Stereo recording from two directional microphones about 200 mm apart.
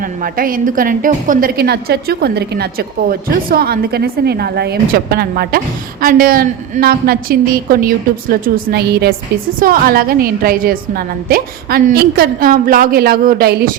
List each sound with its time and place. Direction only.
0.0 s a woman's voice: 45° right (ahead or behind)